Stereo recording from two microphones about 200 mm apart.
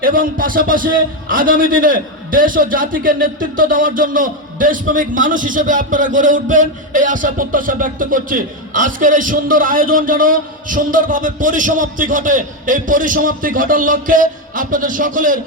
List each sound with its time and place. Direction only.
0.0 s a man's voice: 45° right (ahead or behind)